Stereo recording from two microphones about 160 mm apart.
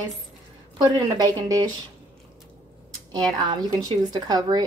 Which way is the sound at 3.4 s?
25° right (ahead or behind).